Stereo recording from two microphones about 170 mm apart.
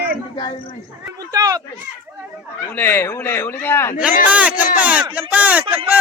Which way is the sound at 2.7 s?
10° left (ahead or behind).